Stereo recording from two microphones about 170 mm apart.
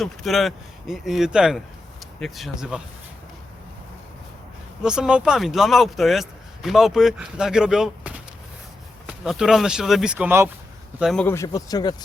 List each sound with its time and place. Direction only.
0.0 s speech: centre (ahead or behind)
4.8 s speech: 5° right (ahead or behind)
11.0 s speech: centre (ahead or behind)
11.3 s speech: 20° left (ahead or behind)